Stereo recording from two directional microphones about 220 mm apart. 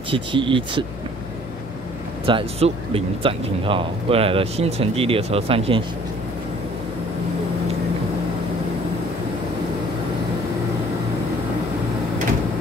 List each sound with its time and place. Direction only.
0.1 s speech: 20° right (ahead or behind)
2.2 s speech: 25° right (ahead or behind)